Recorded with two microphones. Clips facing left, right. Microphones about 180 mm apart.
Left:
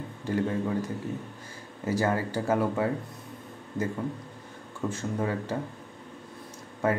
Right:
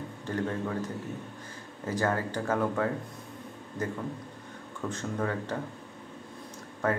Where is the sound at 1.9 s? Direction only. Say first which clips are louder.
Left 2 dB; 10° left (ahead or behind).